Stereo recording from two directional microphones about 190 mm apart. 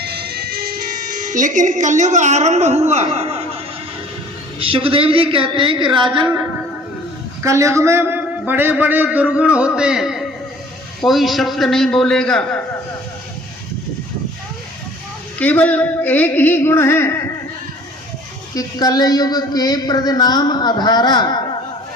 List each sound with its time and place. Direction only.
0.0 s music: 55° right (ahead or behind); by 3.6 s 30° right (ahead or behind)
4.6 s a woman's voice: 30° right (ahead or behind)
7.4 s a man's voice: 15° right (ahead or behind); by 12.6 s 5° left (ahead or behind)
15.4 s a sound: 10° left (ahead or behind)
18.5 s speech: 20° left (ahead or behind)